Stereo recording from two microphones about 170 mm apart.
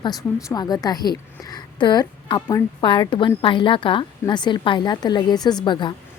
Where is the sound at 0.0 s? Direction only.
20° left (ahead or behind).